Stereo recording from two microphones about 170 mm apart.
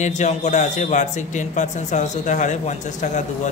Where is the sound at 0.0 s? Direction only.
45° left (ahead or behind).